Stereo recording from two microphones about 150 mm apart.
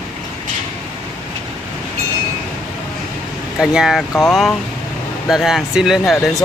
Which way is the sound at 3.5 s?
Centre (ahead or behind).